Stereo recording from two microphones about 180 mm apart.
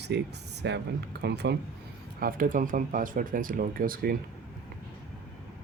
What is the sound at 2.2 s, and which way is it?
Speech, 50° right (ahead or behind).